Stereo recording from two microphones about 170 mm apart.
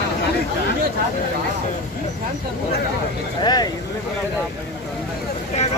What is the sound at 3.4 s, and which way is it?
Speech, 25° left (ahead or behind).